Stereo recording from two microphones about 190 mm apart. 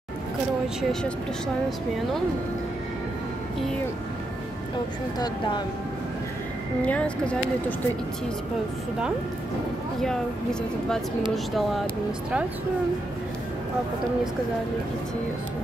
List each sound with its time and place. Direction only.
6.8 s speech: 5° left (ahead or behind)
11.3 s speech: centre (ahead or behind)